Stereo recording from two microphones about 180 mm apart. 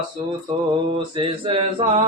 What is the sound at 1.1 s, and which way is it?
Mantra, 30° right (ahead or behind).